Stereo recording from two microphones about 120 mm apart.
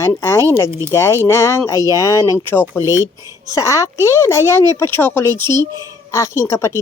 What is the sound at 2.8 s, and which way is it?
Speech, 25° right (ahead or behind).